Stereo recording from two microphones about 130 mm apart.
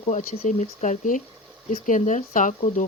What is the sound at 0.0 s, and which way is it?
Speech, 65° left (ahead or behind).